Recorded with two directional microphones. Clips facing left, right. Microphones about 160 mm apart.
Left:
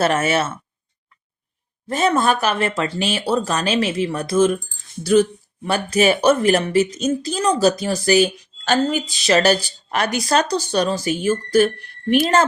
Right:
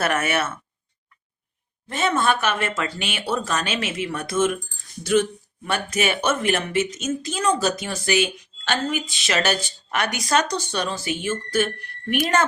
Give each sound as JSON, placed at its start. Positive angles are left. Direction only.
{"t": 0.0, "sound": "speech", "side_deg": 30}
{"t": 1.9, "sound": "a woman's voice", "side_deg": 40}
{"t": 5.6, "sound": "a woman's voice", "side_deg": 35}